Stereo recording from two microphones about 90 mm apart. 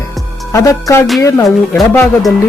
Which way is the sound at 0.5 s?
35° left (ahead or behind).